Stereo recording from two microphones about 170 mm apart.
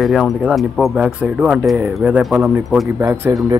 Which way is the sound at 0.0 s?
Centre (ahead or behind).